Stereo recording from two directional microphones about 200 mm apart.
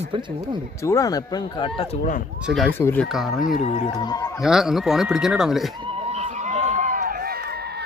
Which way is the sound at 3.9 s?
20° left (ahead or behind).